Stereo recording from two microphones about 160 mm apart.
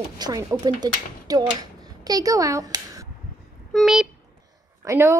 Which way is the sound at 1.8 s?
25° right (ahead or behind).